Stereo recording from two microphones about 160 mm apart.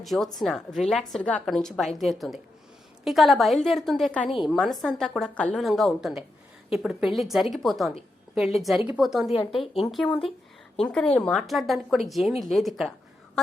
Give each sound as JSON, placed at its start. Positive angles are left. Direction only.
{"t": 0.0, "sound": "speech", "side_deg": 0}
{"t": 9.3, "sound": "a woman's voice", "side_deg": 30}
{"t": 10.8, "sound": "speech", "side_deg": 5}